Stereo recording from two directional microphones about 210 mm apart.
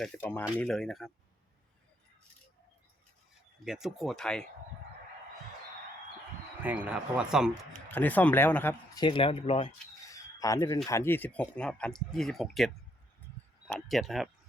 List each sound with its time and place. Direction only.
0.0 s speech: 10° left (ahead or behind)
3.6 s speech: centre (ahead or behind)
6.6 s speech: 10° right (ahead or behind)
7.9 s speech: 10° left (ahead or behind)
9.0 s speech: 25° left (ahead or behind)
10.1 s chicken: 15° left (ahead or behind)
10.8 s speech: 10° left (ahead or behind)